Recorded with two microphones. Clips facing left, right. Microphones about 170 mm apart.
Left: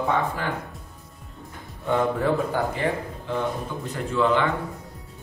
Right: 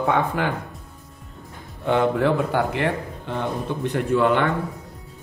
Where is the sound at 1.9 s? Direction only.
70° right (ahead or behind).